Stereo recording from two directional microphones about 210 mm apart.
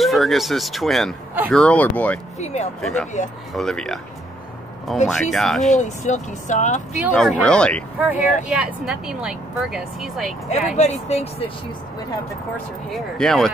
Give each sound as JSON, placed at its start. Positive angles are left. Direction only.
{"t": 0.0, "sound": "a woman's voice", "side_deg": 0}
{"t": 2.3, "sound": "speech", "side_deg": 30}
{"t": 2.8, "sound": "a woman's voice", "side_deg": 0}
{"t": 5.0, "sound": "a woman's voice", "side_deg": 0}
{"t": 5.6, "sound": "speech", "side_deg": 35}
{"t": 7.0, "sound": "a woman's voice", "side_deg": 5}
{"t": 8.2, "sound": "speech", "side_deg": 35}
{"t": 8.5, "sound": "a woman's voice", "side_deg": -5}
{"t": 10.8, "sound": "speech", "side_deg": 30}
{"t": 12.9, "sound": "a woman's voice", "side_deg": 0}